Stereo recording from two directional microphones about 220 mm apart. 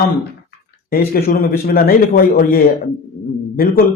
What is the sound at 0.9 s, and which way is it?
A man's voice, 40° left (ahead or behind).